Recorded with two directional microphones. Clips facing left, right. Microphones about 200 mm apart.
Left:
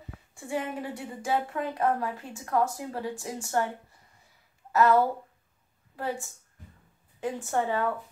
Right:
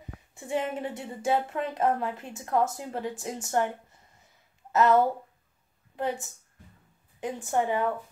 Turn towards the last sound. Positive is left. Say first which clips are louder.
# right 1 dB
turn(degrees=-15)  # may be behind; listen again after turning